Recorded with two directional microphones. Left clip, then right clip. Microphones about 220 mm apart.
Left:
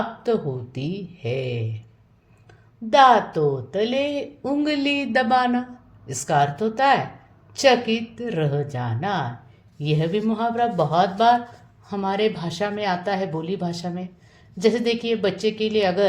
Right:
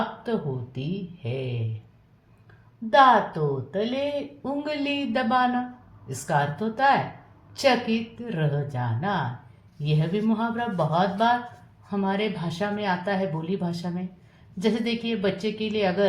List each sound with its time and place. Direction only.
0.2 s a woman's voice: 35° left (ahead or behind)
2.9 s a woman's voice: 40° left (ahead or behind)